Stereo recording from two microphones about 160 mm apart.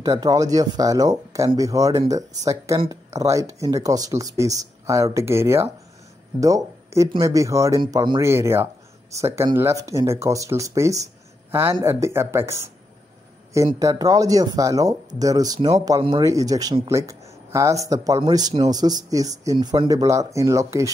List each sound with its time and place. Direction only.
0.0 s speech: 25° right (ahead or behind)
8.2 s speech: 15° right (ahead or behind)
13.7 s speech: 20° right (ahead or behind)